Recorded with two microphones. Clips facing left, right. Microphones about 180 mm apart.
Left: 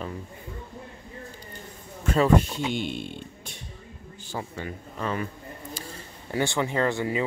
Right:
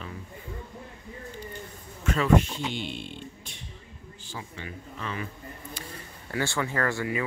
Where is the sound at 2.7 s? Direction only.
50° left (ahead or behind).